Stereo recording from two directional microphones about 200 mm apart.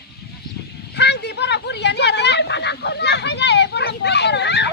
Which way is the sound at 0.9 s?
60° left (ahead or behind).